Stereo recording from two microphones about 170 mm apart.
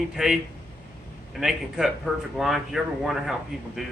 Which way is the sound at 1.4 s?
Centre (ahead or behind).